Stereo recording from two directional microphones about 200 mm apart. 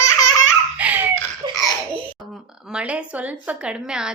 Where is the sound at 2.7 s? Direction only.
5° right (ahead or behind).